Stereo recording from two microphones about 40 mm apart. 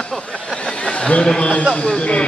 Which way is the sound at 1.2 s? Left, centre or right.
Left.